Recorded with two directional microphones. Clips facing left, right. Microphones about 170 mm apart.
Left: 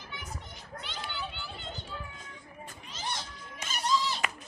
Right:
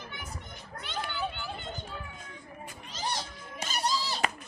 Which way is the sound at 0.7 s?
50° right (ahead or behind).